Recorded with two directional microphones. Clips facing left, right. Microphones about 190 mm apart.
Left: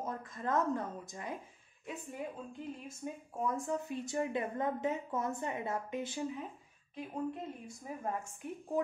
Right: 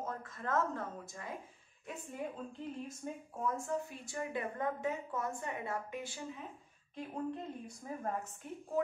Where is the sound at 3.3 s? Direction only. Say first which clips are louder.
Left 2 dB; 15° left (ahead or behind).